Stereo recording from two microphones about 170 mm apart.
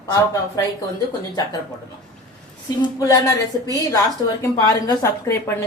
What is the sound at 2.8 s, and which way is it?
Speech, 20° left (ahead or behind).